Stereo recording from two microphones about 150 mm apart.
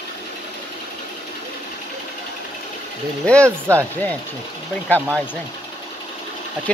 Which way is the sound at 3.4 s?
20° right (ahead or behind).